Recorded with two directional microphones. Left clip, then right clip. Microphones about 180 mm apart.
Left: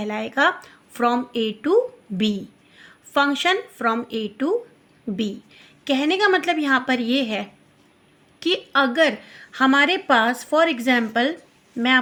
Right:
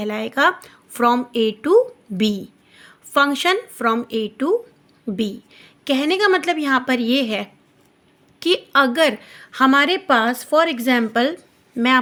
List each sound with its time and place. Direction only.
0.0 s a woman's voice: 25° right (ahead or behind)